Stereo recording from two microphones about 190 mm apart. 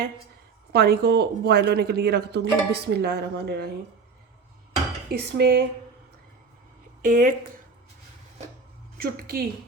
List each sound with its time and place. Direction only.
0.7 s speech: 55° right (ahead or behind)
5.1 s speech: 60° right (ahead or behind)
7.0 s a woman's voice: 45° right (ahead or behind)
9.0 s a woman's voice: 50° right (ahead or behind)